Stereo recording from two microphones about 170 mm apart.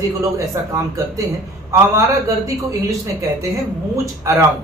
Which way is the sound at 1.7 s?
20° right (ahead or behind).